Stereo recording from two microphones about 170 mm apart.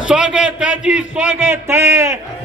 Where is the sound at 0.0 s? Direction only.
5° right (ahead or behind).